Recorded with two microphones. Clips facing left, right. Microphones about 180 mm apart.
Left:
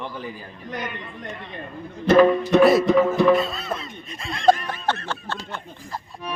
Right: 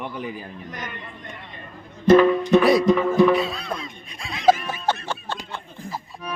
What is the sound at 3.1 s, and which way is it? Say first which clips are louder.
Snicker: right 1 dB; centre (ahead or behind).